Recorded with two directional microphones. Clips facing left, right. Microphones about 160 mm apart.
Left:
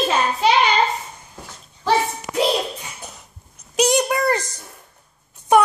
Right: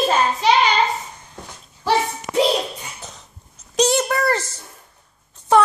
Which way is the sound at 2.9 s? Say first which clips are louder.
Even; 10° left (ahead or behind).